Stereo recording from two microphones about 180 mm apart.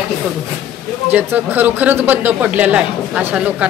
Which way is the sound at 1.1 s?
10° right (ahead or behind).